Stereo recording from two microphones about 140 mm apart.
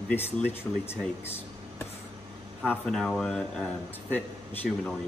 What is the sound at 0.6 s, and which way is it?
Speech, 10° left (ahead or behind).